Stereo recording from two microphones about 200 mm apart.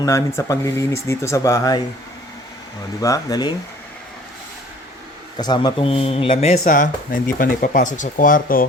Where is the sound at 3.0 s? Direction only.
15° left (ahead or behind).